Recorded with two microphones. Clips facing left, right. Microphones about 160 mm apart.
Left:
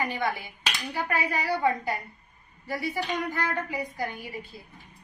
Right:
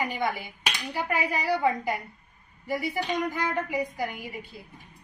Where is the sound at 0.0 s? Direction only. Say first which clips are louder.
Even; 15° right (ahead or behind).